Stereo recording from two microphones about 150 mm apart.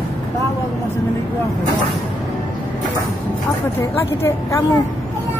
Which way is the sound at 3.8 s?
20° left (ahead or behind).